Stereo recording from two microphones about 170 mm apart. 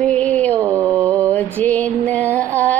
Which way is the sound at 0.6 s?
15° right (ahead or behind).